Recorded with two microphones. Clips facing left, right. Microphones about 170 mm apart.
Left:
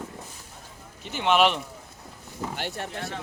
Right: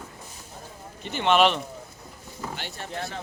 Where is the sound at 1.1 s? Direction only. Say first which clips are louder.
Right 1 dB; 5° left (ahead or behind).